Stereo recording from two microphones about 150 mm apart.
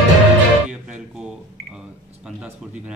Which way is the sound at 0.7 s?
5° right (ahead or behind).